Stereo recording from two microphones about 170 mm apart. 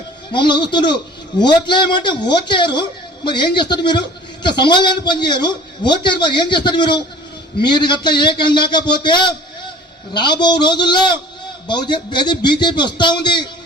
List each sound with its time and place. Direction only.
0.3 s a man's voice: 30° left (ahead or behind)